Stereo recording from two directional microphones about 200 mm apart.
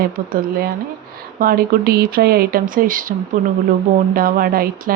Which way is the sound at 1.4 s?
45° right (ahead or behind).